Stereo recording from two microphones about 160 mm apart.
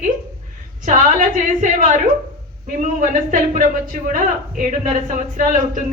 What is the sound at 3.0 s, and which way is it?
Speech, 55° right (ahead or behind).